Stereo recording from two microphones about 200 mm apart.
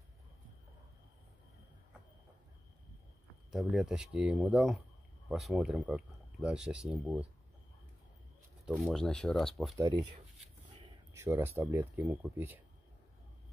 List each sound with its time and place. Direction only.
3.5 s speech: centre (ahead or behind)
8.6 s speech: centre (ahead or behind)
9.8 s speech: 15° right (ahead or behind)